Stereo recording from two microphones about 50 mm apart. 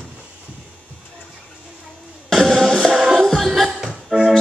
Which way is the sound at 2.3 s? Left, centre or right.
Centre.